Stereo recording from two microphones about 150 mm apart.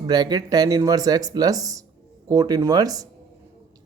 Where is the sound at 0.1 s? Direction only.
25° right (ahead or behind).